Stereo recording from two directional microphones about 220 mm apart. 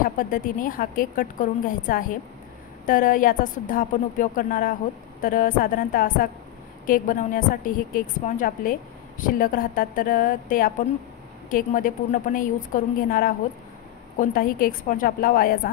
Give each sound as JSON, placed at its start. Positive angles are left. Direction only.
{"t": 0.0, "sound": "a woman's voice", "side_deg": 40}